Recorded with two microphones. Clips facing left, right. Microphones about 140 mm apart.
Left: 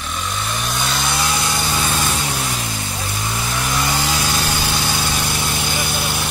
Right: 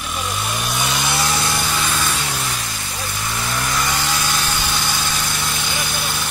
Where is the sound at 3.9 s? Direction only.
30° left (ahead or behind).